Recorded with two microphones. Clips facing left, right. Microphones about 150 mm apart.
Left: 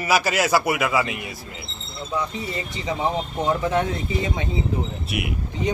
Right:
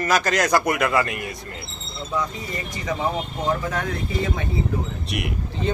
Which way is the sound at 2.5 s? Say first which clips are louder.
Even; 20° left (ahead or behind).